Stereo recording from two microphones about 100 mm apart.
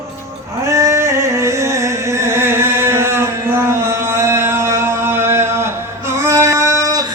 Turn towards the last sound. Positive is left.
turn(degrees=-35)  # may be behind; listen again after turning